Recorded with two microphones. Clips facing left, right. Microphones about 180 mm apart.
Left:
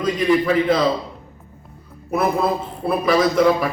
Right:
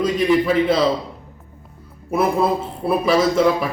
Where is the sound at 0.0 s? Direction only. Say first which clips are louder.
Right 1 dB; 5° right (ahead or behind).